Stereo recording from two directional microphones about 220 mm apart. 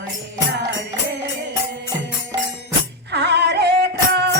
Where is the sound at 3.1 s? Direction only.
50° right (ahead or behind).